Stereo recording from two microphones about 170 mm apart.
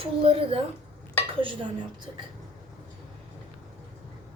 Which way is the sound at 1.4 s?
30° right (ahead or behind).